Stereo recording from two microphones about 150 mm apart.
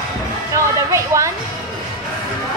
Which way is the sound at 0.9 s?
20° right (ahead or behind).